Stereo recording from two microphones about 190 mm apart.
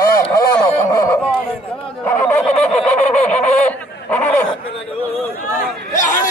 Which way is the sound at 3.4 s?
35° left (ahead or behind).